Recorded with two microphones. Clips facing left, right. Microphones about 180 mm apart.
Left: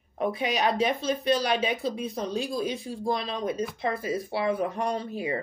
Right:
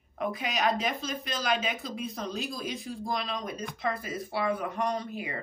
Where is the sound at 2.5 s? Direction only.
25° left (ahead or behind).